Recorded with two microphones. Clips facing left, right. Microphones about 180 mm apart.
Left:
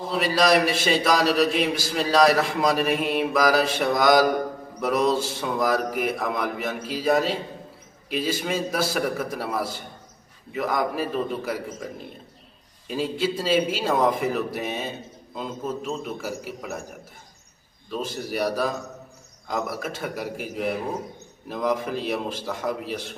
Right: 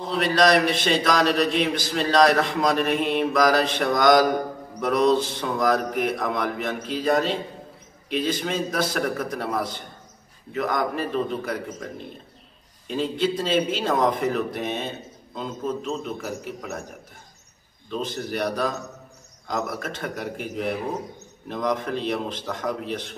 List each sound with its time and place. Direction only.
0.0 s a man's voice: 5° left (ahead or behind)
17.8 s a man's voice: 5° left (ahead or behind)